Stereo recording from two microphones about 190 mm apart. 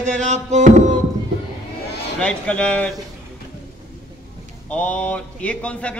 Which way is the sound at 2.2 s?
5° left (ahead or behind).